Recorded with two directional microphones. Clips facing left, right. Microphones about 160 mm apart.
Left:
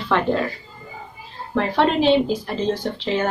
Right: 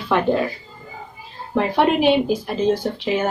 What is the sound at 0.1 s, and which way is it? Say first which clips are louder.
Speech: right 1 dB; 15° right (ahead or behind).